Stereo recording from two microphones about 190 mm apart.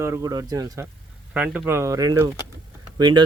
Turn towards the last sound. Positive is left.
turn(degrees=-25)  # may be behind; listen again after turning